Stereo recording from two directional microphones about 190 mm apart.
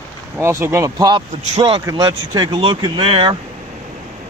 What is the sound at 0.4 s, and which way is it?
Speech, 15° right (ahead or behind).